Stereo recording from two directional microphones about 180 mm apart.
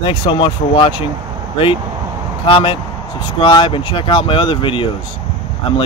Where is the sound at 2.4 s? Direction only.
30° left (ahead or behind).